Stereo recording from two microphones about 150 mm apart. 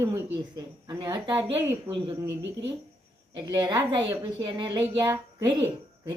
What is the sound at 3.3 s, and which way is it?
A woman's voice, 30° right (ahead or behind).